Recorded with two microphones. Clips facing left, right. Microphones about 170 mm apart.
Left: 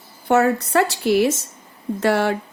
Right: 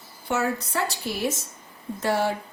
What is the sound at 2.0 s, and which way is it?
Speech, 75° left (ahead or behind).